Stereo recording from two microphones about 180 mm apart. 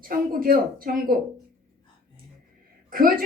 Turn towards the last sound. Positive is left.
turn(degrees=-50)  # may be behind; listen again after turning